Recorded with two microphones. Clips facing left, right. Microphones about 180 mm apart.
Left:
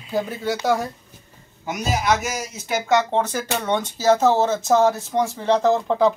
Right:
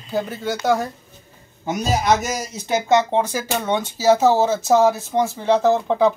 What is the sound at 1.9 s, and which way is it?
Speech, 35° right (ahead or behind).